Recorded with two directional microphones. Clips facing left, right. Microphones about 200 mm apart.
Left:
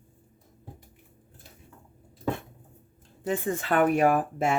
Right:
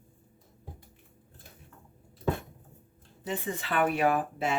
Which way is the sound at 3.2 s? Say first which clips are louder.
Left 6 dB; 50° left (ahead or behind).